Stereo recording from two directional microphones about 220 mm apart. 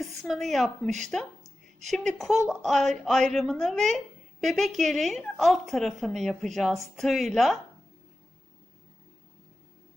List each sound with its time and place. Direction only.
0.0 s a woman's voice: centre (ahead or behind)